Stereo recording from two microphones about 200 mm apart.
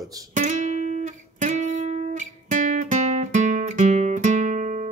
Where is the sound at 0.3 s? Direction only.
40° right (ahead or behind).